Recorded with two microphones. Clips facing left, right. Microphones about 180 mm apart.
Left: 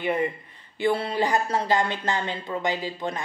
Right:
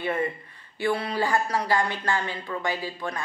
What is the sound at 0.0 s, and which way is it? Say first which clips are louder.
Speech: left 2 dB; 15° left (ahead or behind).